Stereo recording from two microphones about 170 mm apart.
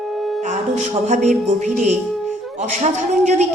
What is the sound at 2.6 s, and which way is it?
Speech, 45° right (ahead or behind).